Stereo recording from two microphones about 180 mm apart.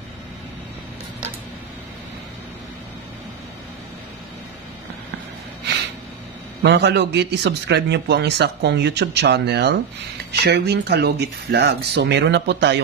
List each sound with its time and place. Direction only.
6.6 s a man's voice: 75° right (ahead or behind)